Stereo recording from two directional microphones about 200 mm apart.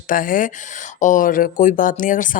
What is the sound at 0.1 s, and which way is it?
Speech, 45° left (ahead or behind).